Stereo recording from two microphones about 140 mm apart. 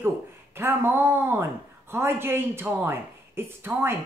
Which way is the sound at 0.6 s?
15° right (ahead or behind).